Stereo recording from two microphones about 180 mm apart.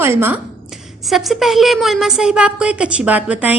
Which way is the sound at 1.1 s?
Centre (ahead or behind).